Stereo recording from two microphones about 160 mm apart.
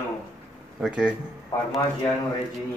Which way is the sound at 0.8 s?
5° right (ahead or behind).